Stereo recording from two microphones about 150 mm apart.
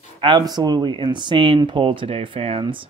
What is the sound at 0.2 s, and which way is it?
Speech, 30° right (ahead or behind).